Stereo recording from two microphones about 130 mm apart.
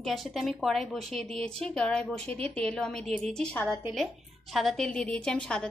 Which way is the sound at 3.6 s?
15° right (ahead or behind).